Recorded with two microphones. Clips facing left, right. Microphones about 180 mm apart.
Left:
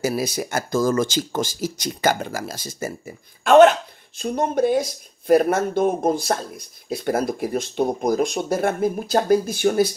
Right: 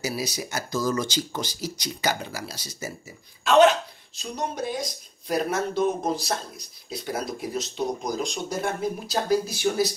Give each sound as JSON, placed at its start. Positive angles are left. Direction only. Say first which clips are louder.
{"t": 0.0, "sound": "speech", "louder": "left 7 dB", "side_deg": 50}